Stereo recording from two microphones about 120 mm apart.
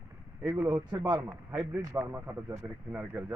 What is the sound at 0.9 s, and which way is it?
Speech, 30° right (ahead or behind).